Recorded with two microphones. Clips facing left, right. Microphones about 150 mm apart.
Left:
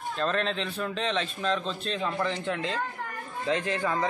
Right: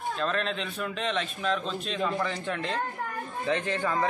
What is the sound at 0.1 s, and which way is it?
A man's voice, centre (ahead or behind).